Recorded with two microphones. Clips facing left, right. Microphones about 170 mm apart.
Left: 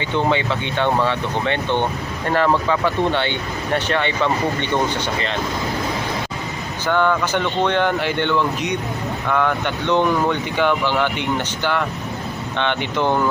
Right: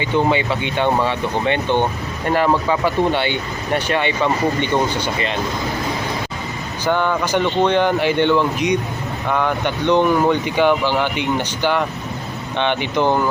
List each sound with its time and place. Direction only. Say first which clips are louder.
0.0 s speech: right 2 dB; 10° right (ahead or behind)
6.8 s speech: even; 15° right (ahead or behind)